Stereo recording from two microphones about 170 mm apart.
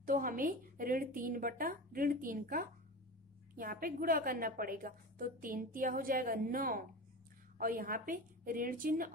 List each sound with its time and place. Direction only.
0.0 s a woman's voice: 55° right (ahead or behind)